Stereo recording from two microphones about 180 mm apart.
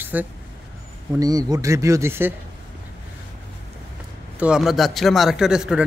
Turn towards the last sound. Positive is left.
turn(degrees=-5)  # may be behind; listen again after turning